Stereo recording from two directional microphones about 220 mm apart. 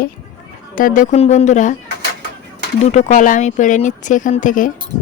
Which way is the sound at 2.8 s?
30° left (ahead or behind).